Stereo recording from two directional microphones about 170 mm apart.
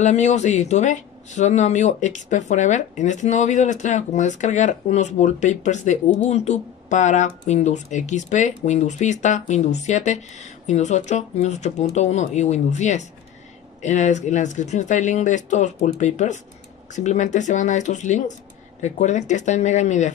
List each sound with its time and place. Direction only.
0.0 s speech: 45° left (ahead or behind)